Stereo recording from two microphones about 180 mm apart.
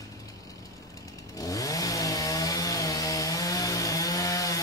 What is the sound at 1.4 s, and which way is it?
Chainsaw, 20° left (ahead or behind).